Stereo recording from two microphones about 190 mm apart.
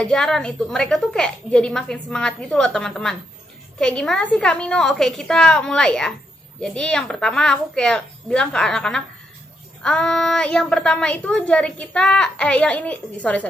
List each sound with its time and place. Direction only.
0.0 s a woman's voice: 5° left (ahead or behind)